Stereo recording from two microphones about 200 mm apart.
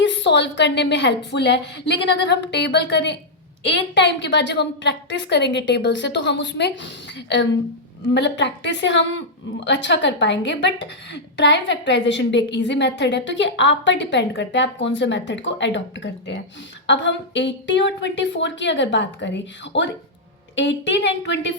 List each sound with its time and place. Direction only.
0.0 s a woman's voice: 65° left (ahead or behind)
16.8 s a woman's voice: 65° left (ahead or behind)